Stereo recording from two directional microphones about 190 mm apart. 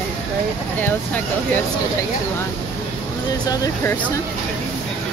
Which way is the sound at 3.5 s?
15° left (ahead or behind).